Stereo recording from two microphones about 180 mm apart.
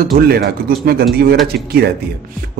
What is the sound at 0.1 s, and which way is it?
Speech, 60° right (ahead or behind).